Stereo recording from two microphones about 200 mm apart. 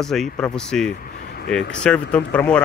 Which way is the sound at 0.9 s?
50° left (ahead or behind).